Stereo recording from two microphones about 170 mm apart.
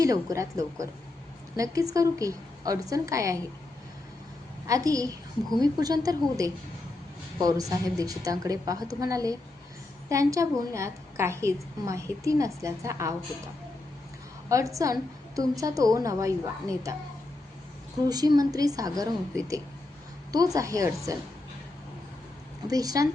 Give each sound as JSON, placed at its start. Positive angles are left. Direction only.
{"t": 0.0, "sound": "a woman's voice", "side_deg": -20}
{"t": 4.6, "sound": "a woman's voice", "side_deg": -20}
{"t": 14.5, "sound": "a woman's voice", "side_deg": -20}
{"t": 18.1, "sound": "a woman's voice", "side_deg": -20}
{"t": 22.6, "sound": "a woman's voice", "side_deg": -20}